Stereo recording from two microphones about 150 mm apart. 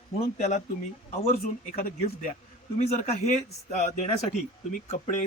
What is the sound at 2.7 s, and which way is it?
Speech, 50° left (ahead or behind).